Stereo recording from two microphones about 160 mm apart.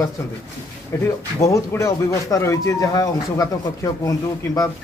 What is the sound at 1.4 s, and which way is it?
Speech, 20° left (ahead or behind).